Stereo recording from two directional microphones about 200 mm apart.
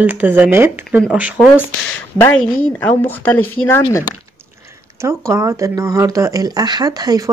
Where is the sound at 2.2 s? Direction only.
10° left (ahead or behind).